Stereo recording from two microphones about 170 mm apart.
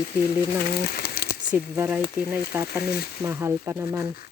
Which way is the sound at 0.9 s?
60° left (ahead or behind).